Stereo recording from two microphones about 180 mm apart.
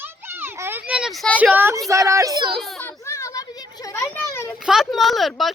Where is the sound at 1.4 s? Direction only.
10° right (ahead or behind).